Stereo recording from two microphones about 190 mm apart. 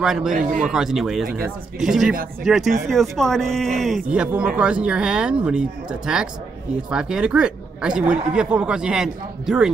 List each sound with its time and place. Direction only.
0.0 s speech: centre (ahead or behind)
0.3 s a man's voice: 45° right (ahead or behind)
0.7 s speech: centre (ahead or behind)